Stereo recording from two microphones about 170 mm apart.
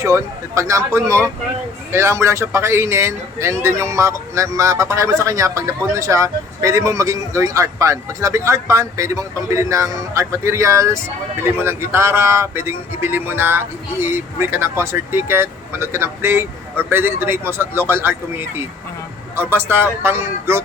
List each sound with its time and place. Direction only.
0.0 s a man's voice: 15° right (ahead or behind)